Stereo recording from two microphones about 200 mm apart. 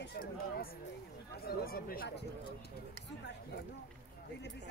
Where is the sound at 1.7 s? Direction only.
50° left (ahead or behind).